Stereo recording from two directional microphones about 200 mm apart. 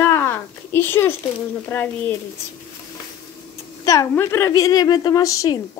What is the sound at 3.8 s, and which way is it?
A woman's voice, 15° left (ahead or behind).